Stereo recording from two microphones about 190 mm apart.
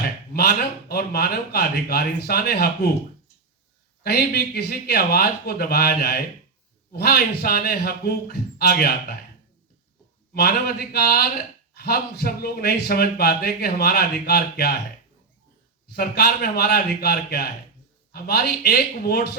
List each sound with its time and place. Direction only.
0.0 s speech: 55° left (ahead or behind)
4.0 s speech: 55° left (ahead or behind)
10.3 s speech: 55° left (ahead or behind)
16.0 s speech: 55° left (ahead or behind)